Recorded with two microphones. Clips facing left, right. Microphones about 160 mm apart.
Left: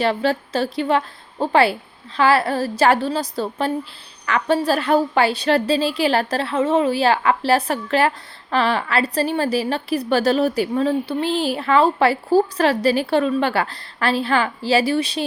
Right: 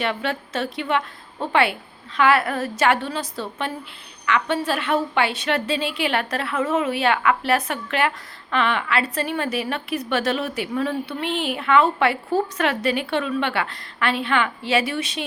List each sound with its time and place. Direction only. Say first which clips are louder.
0.0 s a woman's voice: left 6 dB; 35° left (ahead or behind)